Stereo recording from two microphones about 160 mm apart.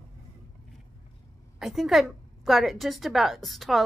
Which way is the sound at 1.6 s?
Centre (ahead or behind).